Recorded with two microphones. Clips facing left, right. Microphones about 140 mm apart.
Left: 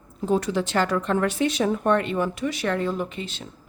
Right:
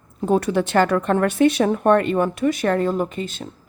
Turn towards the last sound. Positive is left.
turn(degrees=-45)  # may be behind; listen again after turning